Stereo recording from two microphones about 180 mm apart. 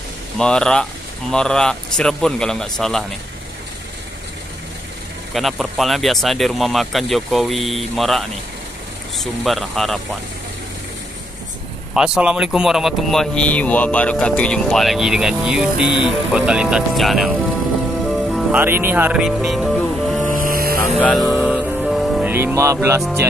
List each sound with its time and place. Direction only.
0.4 s speech: 5° left (ahead or behind)
5.3 s speech: centre (ahead or behind)
11.9 s speech: 5° right (ahead or behind)
18.1 s music: centre (ahead or behind)
18.6 s speech: 10° right (ahead or behind)
20.2 s music: 50° right (ahead or behind)
20.9 s music: centre (ahead or behind)
22.3 s music: 15° right (ahead or behind)